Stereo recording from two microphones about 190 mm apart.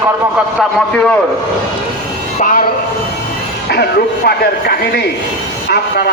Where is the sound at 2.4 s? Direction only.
45° left (ahead or behind).